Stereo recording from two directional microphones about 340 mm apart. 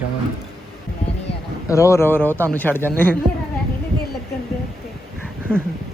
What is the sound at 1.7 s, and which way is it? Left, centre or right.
Speech, centre.